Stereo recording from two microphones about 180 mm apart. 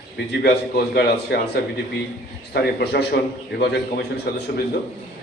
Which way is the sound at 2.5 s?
65° left (ahead or behind).